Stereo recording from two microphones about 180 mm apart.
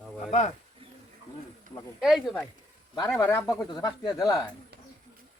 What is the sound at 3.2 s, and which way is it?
Speech, 15° left (ahead or behind).